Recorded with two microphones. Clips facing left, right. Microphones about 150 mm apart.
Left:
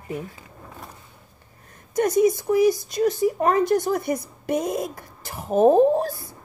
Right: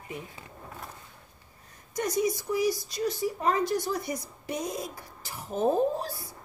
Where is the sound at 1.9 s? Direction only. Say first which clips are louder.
Left 9 dB; 50° left (ahead or behind).